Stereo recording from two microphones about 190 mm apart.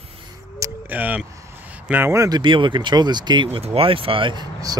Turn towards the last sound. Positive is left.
turn(degrees=-20)  # may be behind; listen again after turning